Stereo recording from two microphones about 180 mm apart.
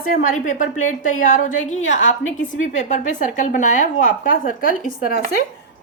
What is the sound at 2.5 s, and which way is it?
A woman's voice, 45° left (ahead or behind).